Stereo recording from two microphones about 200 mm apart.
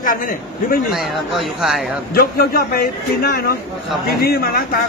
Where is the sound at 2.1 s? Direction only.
50° left (ahead or behind).